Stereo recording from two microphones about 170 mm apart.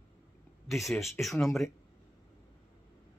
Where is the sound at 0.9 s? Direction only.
15° left (ahead or behind).